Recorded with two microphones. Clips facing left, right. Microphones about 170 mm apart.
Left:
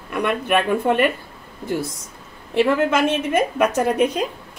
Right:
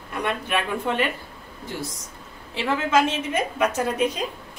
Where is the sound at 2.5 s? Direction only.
60° left (ahead or behind).